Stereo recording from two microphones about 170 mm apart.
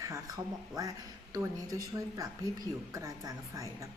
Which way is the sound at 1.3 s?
20° right (ahead or behind).